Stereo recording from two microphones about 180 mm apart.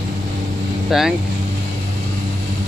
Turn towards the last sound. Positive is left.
turn(degrees=0)  # may be behind; listen again after turning